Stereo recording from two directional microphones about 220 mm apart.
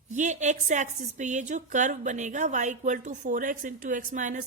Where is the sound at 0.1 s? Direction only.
35° right (ahead or behind).